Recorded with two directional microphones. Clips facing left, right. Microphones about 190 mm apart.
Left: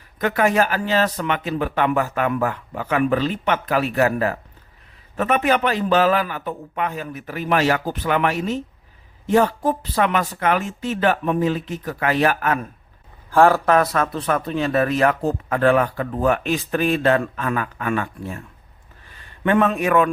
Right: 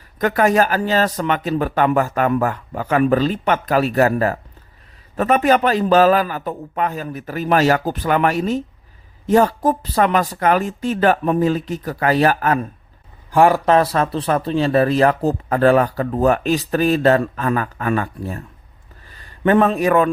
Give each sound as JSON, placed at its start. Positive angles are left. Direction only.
{"t": 0.2, "sound": "speech", "side_deg": -40}
{"t": 13.3, "sound": "a man's voice", "side_deg": -15}
{"t": 13.7, "sound": "a man's voice", "side_deg": -30}